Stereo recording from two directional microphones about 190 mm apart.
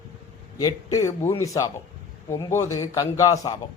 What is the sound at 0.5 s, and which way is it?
A man's voice, 20° left (ahead or behind).